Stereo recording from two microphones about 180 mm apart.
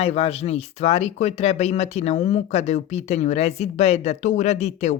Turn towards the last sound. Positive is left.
turn(degrees=35)  # may be behind; listen again after turning